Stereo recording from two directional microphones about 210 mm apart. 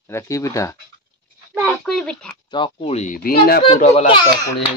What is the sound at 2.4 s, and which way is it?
Speech, 20° left (ahead or behind).